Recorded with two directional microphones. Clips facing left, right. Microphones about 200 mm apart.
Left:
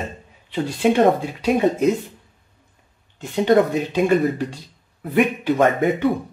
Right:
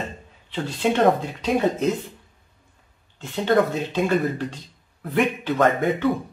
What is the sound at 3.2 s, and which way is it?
Speech, 15° left (ahead or behind).